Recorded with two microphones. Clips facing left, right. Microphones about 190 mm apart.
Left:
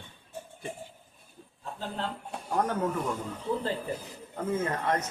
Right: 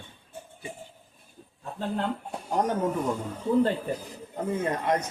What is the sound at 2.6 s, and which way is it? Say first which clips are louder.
Speech: right 2 dB; 20° right (ahead or behind).